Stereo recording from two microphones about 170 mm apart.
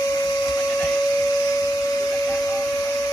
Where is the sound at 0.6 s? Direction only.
5° left (ahead or behind).